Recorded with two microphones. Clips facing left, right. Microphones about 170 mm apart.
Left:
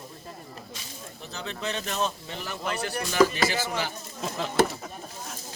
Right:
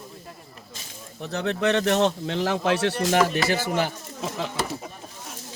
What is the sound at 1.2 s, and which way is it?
Speech, 70° right (ahead or behind).